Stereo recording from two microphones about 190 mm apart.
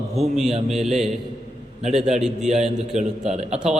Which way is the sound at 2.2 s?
5° right (ahead or behind).